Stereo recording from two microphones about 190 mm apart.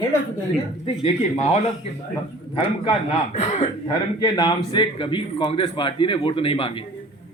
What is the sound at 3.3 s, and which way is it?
Speech, 35° left (ahead or behind).